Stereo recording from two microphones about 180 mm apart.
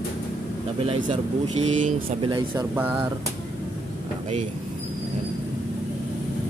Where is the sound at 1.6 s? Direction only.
45° right (ahead or behind).